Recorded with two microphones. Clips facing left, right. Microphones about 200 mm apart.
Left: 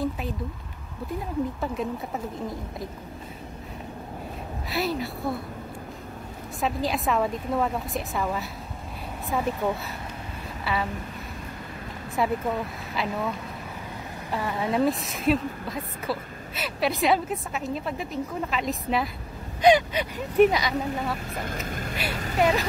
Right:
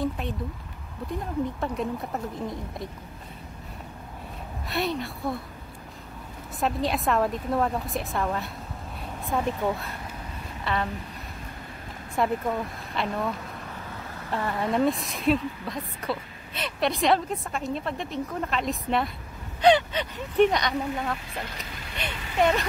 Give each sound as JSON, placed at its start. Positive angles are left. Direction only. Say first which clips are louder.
{"t": 1.6, "sound": "a woman's voice", "louder": "even", "side_deg": 0}
{"t": 4.6, "sound": "a woman's voice", "louder": "left 1 dB", "side_deg": 0}
{"t": 6.6, "sound": "a woman's voice", "louder": "right 1 dB", "side_deg": 0}
{"t": 10.6, "sound": "a sound", "louder": "even", "side_deg": 5}
{"t": 12.2, "sound": "a woman's voice", "louder": "even", "side_deg": 5}
{"t": 14.3, "sound": "a woman's voice", "louder": "even", "side_deg": 5}
{"t": 21.4, "sound": "speech", "louder": "left 5 dB", "side_deg": 50}
{"t": 22.1, "sound": "vehicle", "louder": "left 5 dB", "side_deg": 40}
{"t": 22.4, "sound": "a woman's voice", "louder": "even", "side_deg": 5}